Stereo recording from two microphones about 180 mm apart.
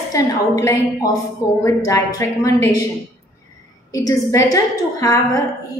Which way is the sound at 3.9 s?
20° left (ahead or behind).